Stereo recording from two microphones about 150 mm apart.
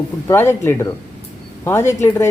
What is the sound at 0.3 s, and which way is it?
Speech, 15° left (ahead or behind).